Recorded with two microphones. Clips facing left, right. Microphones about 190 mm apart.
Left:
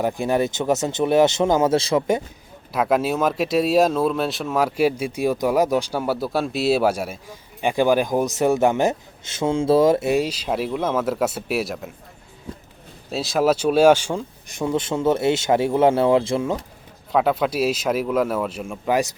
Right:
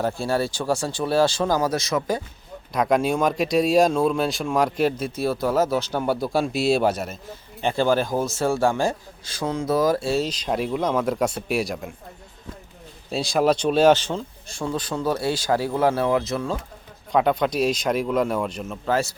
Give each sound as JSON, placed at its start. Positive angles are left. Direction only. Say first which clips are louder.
{"t": 0.0, "sound": "speech", "louder": "left 3 dB", "side_deg": 15}
{"t": 2.7, "sound": "speech", "louder": "even", "side_deg": 5}
{"t": 13.1, "sound": "speech", "louder": "left 1 dB", "side_deg": 0}
{"t": 17.1, "sound": "speech", "louder": "left 1 dB", "side_deg": 5}